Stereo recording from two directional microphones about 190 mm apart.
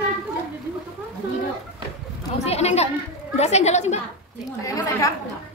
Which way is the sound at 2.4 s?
35° left (ahead or behind).